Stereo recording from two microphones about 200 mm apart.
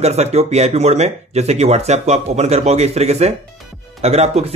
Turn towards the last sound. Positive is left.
turn(degrees=-30)  # may be behind; listen again after turning